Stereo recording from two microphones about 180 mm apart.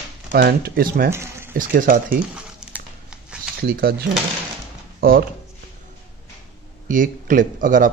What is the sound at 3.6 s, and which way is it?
Speech, 55° right (ahead or behind).